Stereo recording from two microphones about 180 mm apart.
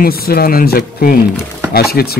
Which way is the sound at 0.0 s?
55° left (ahead or behind).